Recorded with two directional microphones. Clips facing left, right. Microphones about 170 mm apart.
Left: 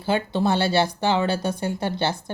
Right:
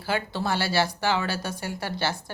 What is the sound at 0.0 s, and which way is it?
Speech, 20° left (ahead or behind).